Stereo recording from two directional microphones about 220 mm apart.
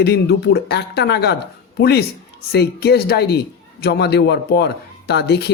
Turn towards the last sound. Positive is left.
turn(degrees=50)  # may be behind; listen again after turning